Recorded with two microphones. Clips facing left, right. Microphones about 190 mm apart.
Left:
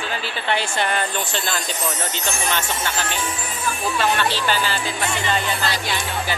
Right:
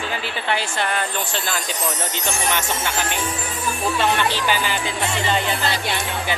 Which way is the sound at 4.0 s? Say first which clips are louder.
Even; 15° right (ahead or behind).